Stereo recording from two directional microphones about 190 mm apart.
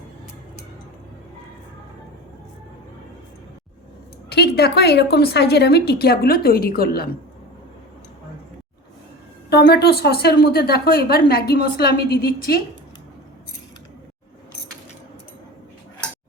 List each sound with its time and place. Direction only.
4.3 s speech: 55° left (ahead or behind)
9.5 s speech: 60° left (ahead or behind)